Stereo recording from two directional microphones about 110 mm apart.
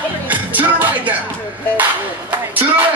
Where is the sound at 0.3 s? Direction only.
15° right (ahead or behind).